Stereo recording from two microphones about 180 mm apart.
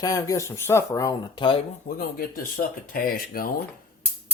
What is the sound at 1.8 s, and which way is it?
Speech, 55° left (ahead or behind).